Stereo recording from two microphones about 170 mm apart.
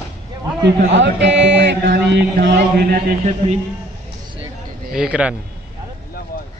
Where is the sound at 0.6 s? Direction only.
90° right; by 3.1 s 65° right (ahead or behind).